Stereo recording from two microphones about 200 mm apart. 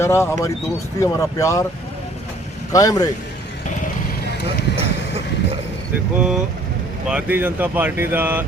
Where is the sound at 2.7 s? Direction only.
15° left (ahead or behind).